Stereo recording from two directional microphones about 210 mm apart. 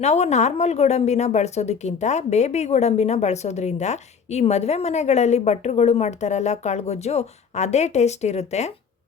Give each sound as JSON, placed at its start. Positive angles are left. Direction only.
{"t": 0.0, "sound": "a woman's voice", "side_deg": 30}